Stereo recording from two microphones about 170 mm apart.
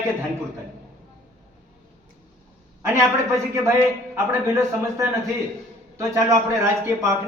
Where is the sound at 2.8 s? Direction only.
15° right (ahead or behind).